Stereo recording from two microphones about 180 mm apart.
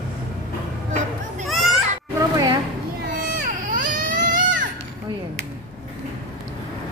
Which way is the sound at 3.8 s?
50° right (ahead or behind).